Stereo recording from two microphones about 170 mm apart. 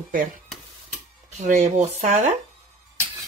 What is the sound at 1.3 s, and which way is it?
Speech, 45° right (ahead or behind).